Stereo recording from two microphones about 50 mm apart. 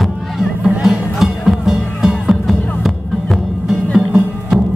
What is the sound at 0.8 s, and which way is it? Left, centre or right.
Music, centre.